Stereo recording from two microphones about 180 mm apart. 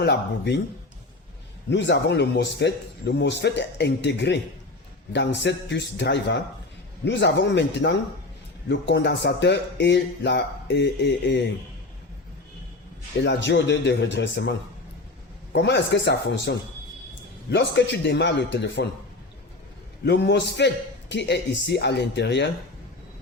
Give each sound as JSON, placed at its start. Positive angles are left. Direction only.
{"t": 0.0, "sound": "speech", "side_deg": 70}
{"t": 1.7, "sound": "speech", "side_deg": 75}
{"t": 13.2, "sound": "speech", "side_deg": 75}
{"t": 15.5, "sound": "speech", "side_deg": 70}
{"t": 20.1, "sound": "speech", "side_deg": 70}